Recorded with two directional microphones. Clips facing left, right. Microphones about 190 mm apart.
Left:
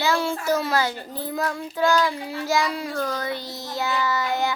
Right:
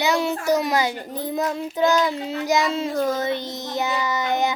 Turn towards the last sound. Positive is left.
turn(degrees=-20)  # may be behind; listen again after turning